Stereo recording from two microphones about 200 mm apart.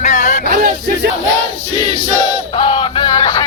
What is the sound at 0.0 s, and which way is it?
Music, 35° left (ahead or behind).